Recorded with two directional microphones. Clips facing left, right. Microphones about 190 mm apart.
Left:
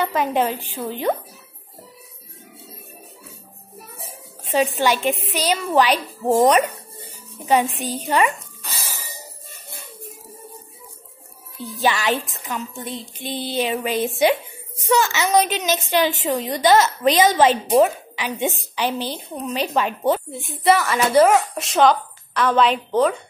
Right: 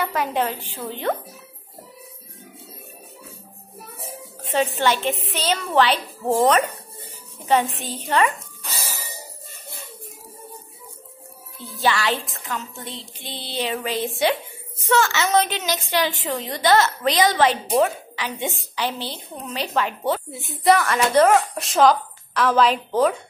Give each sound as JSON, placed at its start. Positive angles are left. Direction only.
{"t": 0.0, "sound": "a woman's voice", "side_deg": 20}
{"t": 4.4, "sound": "a woman's voice", "side_deg": 10}
{"t": 11.8, "sound": "a woman's voice", "side_deg": 20}
{"t": 13.3, "sound": "a sound", "side_deg": 45}
{"t": 13.6, "sound": "a woman's voice", "side_deg": 15}
{"t": 20.4, "sound": "a woman's voice", "side_deg": 0}